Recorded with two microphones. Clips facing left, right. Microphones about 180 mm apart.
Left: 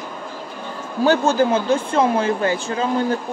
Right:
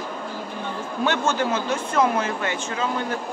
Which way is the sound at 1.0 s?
35° left (ahead or behind).